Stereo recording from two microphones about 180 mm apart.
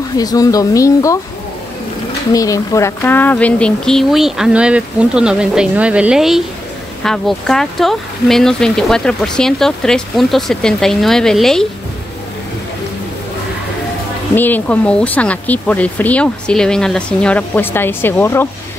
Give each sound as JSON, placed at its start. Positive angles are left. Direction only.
{"t": 0.2, "sound": "speech", "side_deg": 20}
{"t": 2.3, "sound": "speech", "side_deg": 20}
{"t": 14.3, "sound": "speech", "side_deg": 10}